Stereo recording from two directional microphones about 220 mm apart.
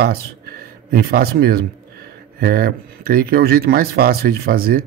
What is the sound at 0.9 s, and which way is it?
Speech, 45° right (ahead or behind).